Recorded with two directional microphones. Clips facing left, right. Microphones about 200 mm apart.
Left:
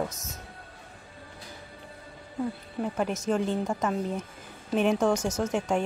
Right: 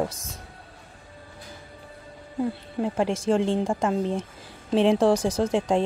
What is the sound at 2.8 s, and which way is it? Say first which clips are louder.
Speech: right 4 dB; 30° right (ahead or behind).